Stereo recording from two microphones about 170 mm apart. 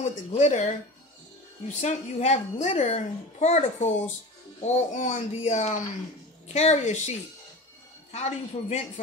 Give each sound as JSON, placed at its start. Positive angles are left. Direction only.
{"t": 0.0, "sound": "a child's voice", "side_deg": 40}
{"t": 1.7, "sound": "a child's voice", "side_deg": 40}